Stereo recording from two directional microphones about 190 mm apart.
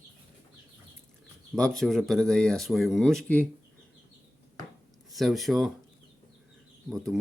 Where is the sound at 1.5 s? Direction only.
5° left (ahead or behind).